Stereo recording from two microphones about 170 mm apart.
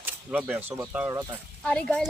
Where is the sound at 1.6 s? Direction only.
5° left (ahead or behind).